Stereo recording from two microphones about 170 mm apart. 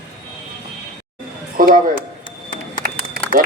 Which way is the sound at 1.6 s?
55° right (ahead or behind).